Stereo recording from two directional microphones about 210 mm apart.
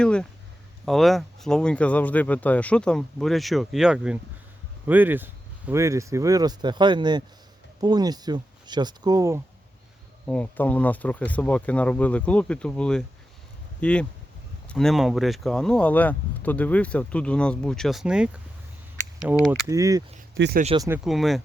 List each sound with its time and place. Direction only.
0.0 s speech: 5° left (ahead or behind); by 9.4 s 15° right (ahead or behind)
10.2 s speech: 5° left (ahead or behind); by 20.0 s 15° right (ahead or behind)
20.3 s speech: 55° right (ahead or behind)
20.7 s speech: 15° right (ahead or behind)
21.0 s speech: centre (ahead or behind)